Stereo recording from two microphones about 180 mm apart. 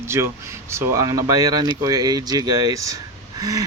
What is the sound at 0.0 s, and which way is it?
Speech, 15° right (ahead or behind).